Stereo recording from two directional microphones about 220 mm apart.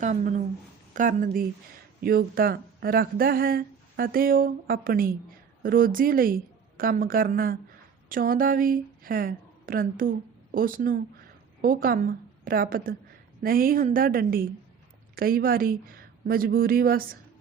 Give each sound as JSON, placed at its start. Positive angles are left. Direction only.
{"t": 0.0, "sound": "a woman's voice", "side_deg": -35}